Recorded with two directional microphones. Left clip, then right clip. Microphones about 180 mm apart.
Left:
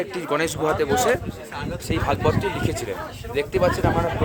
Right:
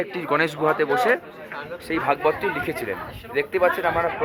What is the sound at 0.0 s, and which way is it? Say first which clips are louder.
Speech: right 1 dB; 15° right (ahead or behind).